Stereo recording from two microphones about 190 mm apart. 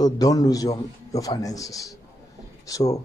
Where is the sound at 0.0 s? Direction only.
20° left (ahead or behind).